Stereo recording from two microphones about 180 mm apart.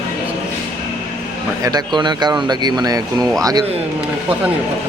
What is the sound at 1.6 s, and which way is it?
Speech, 25° right (ahead or behind).